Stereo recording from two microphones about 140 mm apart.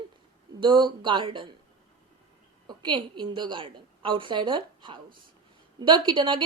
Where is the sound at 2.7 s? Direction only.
35° right (ahead or behind).